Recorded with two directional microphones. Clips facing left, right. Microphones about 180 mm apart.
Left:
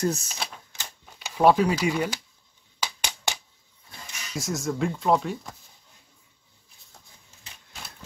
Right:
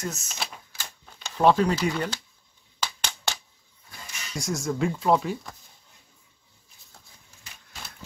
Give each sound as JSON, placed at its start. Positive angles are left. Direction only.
{"t": 0.0, "sound": "speech", "side_deg": 35}
{"t": 0.3, "sound": "typewriter", "side_deg": 0}
{"t": 1.1, "sound": "speech", "side_deg": 10}
{"t": 2.8, "sound": "a sound", "side_deg": 15}
{"t": 4.4, "sound": "speech", "side_deg": 0}